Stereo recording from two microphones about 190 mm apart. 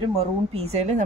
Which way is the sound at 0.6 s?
35° right (ahead or behind).